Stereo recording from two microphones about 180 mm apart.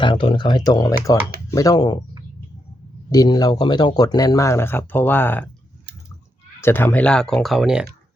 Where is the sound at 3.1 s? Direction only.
20° left (ahead or behind).